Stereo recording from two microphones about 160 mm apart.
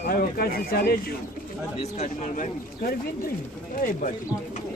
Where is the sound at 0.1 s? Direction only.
70° left (ahead or behind).